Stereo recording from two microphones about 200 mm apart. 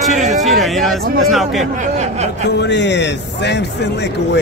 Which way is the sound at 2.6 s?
60° left (ahead or behind).